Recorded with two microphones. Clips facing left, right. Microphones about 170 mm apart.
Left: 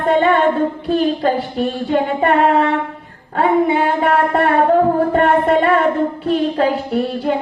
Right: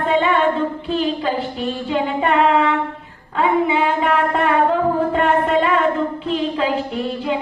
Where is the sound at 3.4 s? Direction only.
50° left (ahead or behind).